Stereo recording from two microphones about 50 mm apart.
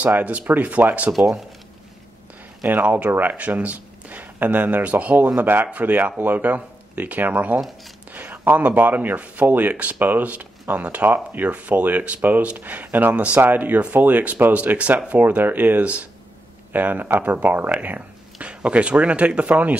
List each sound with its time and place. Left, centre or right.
0.0 s speech: right
2.7 s speech: right
17.7 s a sound: right
18.5 s speech: right